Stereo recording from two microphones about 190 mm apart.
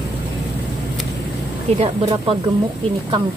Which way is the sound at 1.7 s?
30° right (ahead or behind).